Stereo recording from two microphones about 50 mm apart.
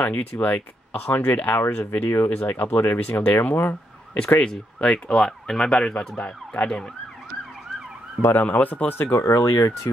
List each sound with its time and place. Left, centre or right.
0.0 s speech: left
4.4 s fowl: left
5.9 s speech: left
8.4 s speech: left
9.1 s speech: left